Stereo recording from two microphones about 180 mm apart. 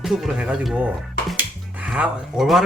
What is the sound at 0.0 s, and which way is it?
Speech, centre (ahead or behind).